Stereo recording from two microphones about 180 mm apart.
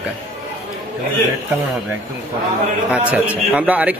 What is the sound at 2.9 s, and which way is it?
Speech, 5° right (ahead or behind).